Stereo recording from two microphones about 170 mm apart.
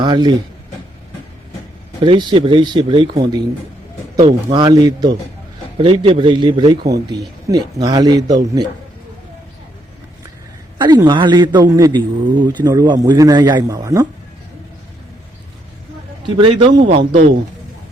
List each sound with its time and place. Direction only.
0.0 s speech: 25° right (ahead or behind)
2.0 s a man's voice: 30° right (ahead or behind)
4.2 s speech: 40° right (ahead or behind)
4.5 s a man's voice: 25° right (ahead or behind)
10.8 s a man's voice: 25° right (ahead or behind)
16.4 s a man's voice: 25° right (ahead or behind)